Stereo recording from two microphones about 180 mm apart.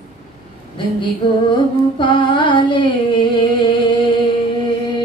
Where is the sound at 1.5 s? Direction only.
25° left (ahead or behind).